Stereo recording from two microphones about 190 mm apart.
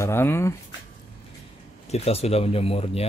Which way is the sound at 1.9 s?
35° left (ahead or behind).